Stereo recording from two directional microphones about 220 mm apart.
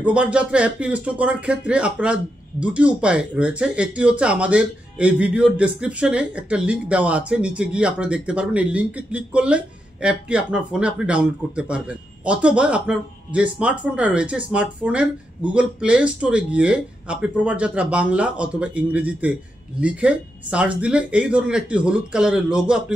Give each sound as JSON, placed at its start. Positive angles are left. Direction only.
{"t": 0.0, "sound": "speech", "side_deg": -5}